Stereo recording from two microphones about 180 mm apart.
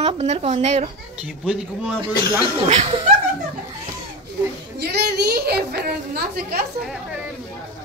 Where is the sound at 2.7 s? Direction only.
35° right (ahead or behind).